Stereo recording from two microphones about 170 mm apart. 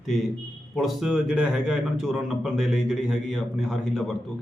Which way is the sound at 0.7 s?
Centre (ahead or behind).